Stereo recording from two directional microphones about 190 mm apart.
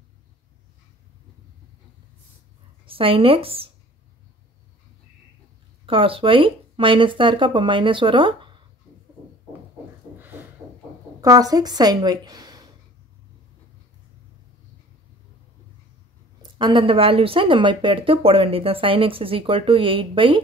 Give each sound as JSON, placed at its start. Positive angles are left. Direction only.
{"t": 2.8, "sound": "speech", "side_deg": -30}
{"t": 5.9, "sound": "speech", "side_deg": -30}
{"t": 11.1, "sound": "a woman's voice", "side_deg": -20}
{"t": 16.5, "sound": "speech", "side_deg": -25}